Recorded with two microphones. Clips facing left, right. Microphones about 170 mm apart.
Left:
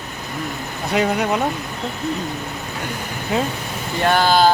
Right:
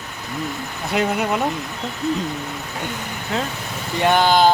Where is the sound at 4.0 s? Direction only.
20° right (ahead or behind).